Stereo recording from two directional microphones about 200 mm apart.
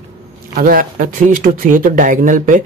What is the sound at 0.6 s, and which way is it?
Speech, 45° right (ahead or behind).